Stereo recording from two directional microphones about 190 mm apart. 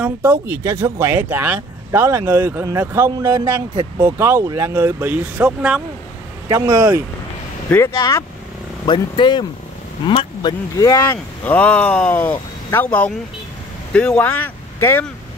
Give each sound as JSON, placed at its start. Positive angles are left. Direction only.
{"t": 0.0, "sound": "speech", "side_deg": -10}
{"t": 6.5, "sound": "speech", "side_deg": -20}
{"t": 7.7, "sound": "speech", "side_deg": 15}